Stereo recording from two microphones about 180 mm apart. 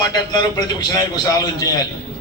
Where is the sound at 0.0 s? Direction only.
25° left (ahead or behind).